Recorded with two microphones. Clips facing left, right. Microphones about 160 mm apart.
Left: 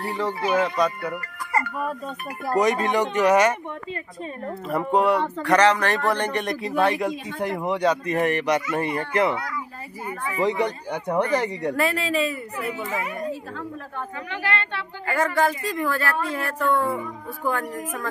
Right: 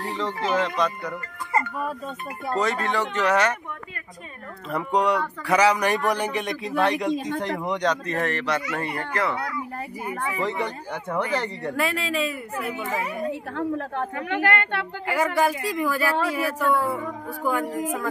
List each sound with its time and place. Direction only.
0.2 s a man's voice: 10° left (ahead or behind)
2.5 s a man's voice: 15° left (ahead or behind)
4.6 s a man's voice: 5° left (ahead or behind); by 9.4 s 20° left (ahead or behind)
10.0 s speech: 10° right (ahead or behind)
10.4 s a man's voice: 15° left (ahead or behind)
11.7 s speech: centre (ahead or behind)
13.3 s a woman's voice: 70° right (ahead or behind)
15.0 s speech: 10° right (ahead or behind)